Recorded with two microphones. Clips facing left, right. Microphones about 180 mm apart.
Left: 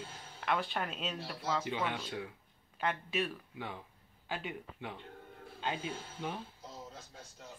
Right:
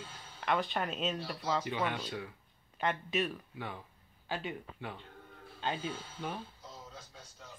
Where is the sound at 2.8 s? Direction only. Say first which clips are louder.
Right 2 dB; 5° left (ahead or behind).